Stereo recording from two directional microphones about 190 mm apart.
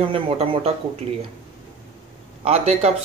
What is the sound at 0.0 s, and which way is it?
Speech, 30° right (ahead or behind).